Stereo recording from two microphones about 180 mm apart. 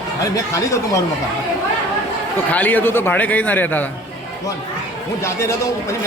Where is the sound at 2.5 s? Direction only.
10° left (ahead or behind).